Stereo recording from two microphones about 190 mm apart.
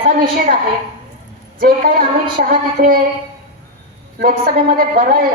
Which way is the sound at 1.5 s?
50° right (ahead or behind).